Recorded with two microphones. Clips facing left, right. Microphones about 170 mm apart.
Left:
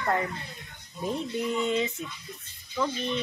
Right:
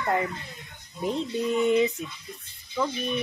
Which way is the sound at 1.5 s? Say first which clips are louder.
Right 7 dB; 15° right (ahead or behind).